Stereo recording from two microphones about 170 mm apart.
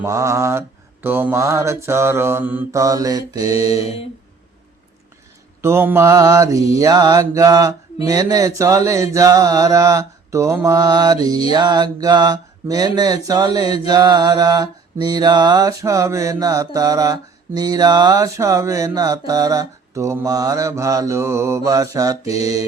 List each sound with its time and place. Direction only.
0.0 s mantra: 20° right (ahead or behind)
3.8 s a sound: 35° left (ahead or behind)
5.6 s mantra: 15° right (ahead or behind)